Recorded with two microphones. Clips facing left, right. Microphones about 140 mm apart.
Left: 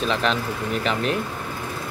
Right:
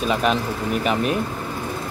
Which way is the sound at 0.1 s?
10° right (ahead or behind).